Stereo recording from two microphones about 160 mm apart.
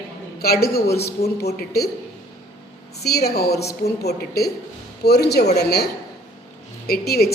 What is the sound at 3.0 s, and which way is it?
A woman's voice, 80° left.